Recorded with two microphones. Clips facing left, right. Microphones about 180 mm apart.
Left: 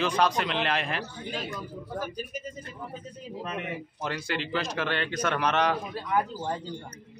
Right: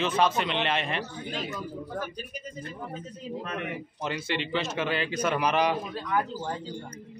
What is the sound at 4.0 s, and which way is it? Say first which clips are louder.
A woman's voice: right 1 dB; centre (ahead or behind).